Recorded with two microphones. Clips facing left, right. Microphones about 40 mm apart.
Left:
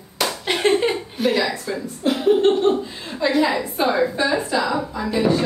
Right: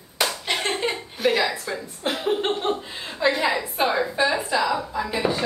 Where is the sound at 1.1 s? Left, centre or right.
Centre.